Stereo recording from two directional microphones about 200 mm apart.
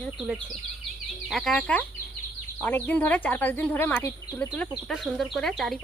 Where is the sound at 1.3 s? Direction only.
Centre (ahead or behind).